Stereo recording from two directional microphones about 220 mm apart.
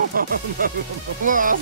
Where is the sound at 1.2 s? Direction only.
40° right (ahead or behind).